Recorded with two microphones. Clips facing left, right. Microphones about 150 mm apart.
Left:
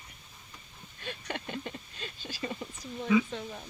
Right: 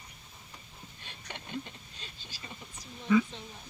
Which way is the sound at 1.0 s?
60° left (ahead or behind).